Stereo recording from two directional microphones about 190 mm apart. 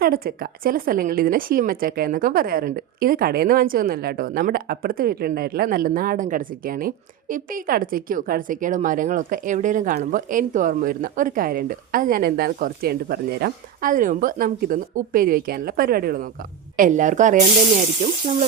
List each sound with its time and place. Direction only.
0.0 s a woman's voice: 50° right (ahead or behind)